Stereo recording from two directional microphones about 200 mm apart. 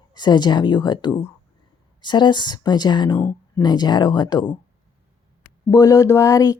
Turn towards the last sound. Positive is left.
turn(degrees=15)  # may be behind; listen again after turning